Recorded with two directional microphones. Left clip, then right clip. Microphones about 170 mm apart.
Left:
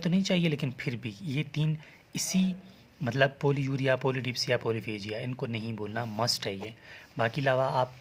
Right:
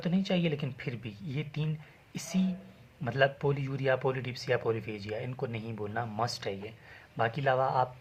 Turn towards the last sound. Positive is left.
turn(degrees=45)  # may be behind; listen again after turning